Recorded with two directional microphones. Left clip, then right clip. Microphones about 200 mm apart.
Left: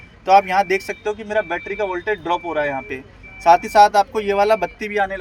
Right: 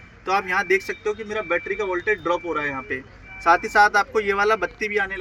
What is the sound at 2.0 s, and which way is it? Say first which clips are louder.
Speech: left 1 dB; 35° right (ahead or behind).